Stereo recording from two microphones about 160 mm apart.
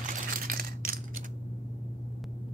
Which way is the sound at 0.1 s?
60° right (ahead or behind).